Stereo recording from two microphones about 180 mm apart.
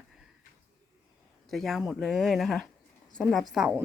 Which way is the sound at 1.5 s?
Centre (ahead or behind).